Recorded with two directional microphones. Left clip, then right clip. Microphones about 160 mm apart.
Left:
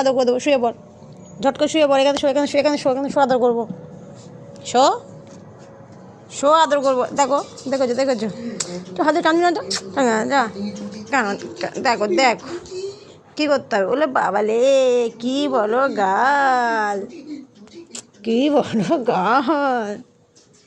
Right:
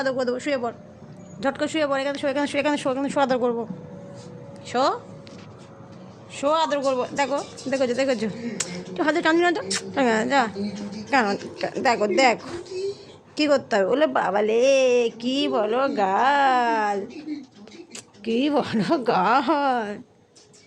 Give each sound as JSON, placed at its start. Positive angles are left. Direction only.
{"t": 0.0, "sound": "a woman's voice", "side_deg": 35}
{"t": 1.9, "sound": "a woman's voice", "side_deg": 40}
{"t": 2.2, "sound": "a woman's voice", "side_deg": 20}
{"t": 2.8, "sound": "speech", "side_deg": 5}
{"t": 4.6, "sound": "speech", "side_deg": 25}
{"t": 6.3, "sound": "speech", "side_deg": 30}
{"t": 7.7, "sound": "a woman's voice", "side_deg": 10}
{"t": 11.1, "sound": "a woman's voice", "side_deg": -5}